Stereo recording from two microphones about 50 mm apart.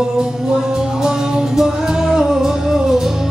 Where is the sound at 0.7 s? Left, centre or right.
Centre.